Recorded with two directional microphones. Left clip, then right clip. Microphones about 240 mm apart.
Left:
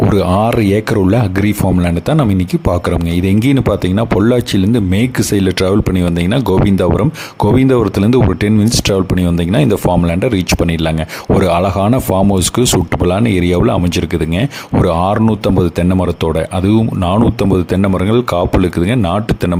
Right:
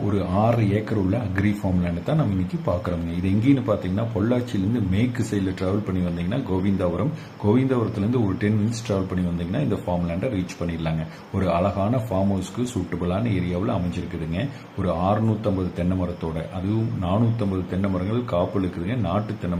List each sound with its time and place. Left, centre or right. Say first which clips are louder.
0.1 s speech: left 10 dB; left
3.2 s speech: left 7 dB; left
11.3 s speech: left 9 dB; left
13.1 s speech: left 14 dB; left
17.7 s speech: left 13 dB; left